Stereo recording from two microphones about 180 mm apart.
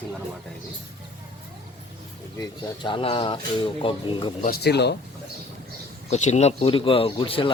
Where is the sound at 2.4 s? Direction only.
25° left (ahead or behind).